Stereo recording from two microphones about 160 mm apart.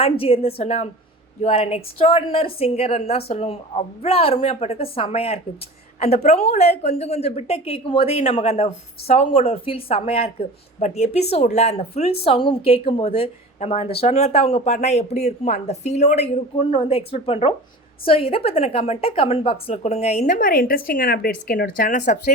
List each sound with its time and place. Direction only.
0.0 s a woman's voice: 40° left (ahead or behind)
20.4 s speech: 65° left (ahead or behind)